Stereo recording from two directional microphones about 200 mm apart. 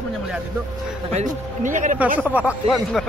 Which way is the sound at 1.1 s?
40° right (ahead or behind).